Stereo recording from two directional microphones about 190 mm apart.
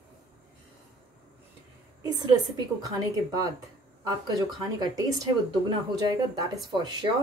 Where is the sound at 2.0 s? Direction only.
20° right (ahead or behind).